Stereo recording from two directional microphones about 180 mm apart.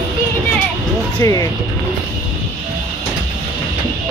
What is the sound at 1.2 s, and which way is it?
Speech, 15° left (ahead or behind).